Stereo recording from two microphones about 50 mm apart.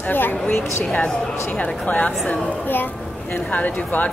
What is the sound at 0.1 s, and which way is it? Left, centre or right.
Speech, left.